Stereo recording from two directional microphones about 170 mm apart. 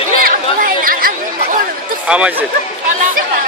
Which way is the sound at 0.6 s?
55° right (ahead or behind).